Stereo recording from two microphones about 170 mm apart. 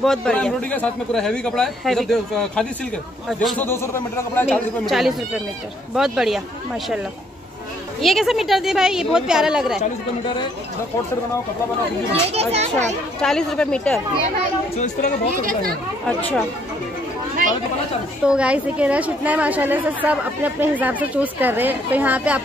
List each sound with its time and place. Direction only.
0.0 s a man's voice: 5° left (ahead or behind)
3.5 s speech: 15° left (ahead or behind)
4.5 s a man's voice: centre (ahead or behind)
8.0 s a man's voice: centre (ahead or behind)
12.3 s a child's voice: 35° right (ahead or behind)
13.2 s a man's voice: 5° left (ahead or behind)
15.3 s speech: 55° right (ahead or behind)
16.1 s speech: 10° left (ahead or behind)
18.2 s a woman's voice: 5° right (ahead or behind)